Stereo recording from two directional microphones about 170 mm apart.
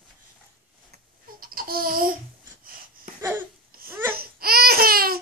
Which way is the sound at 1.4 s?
60° right (ahead or behind).